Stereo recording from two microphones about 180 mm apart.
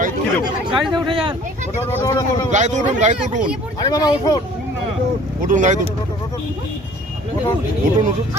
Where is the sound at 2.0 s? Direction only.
20° left (ahead or behind).